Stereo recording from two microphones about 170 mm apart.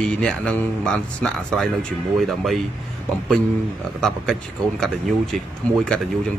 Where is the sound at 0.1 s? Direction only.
5° left (ahead or behind).